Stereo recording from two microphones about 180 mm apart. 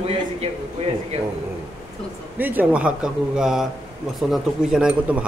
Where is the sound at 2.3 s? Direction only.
10° right (ahead or behind).